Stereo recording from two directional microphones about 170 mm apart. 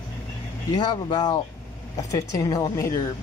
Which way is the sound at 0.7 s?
25° left (ahead or behind).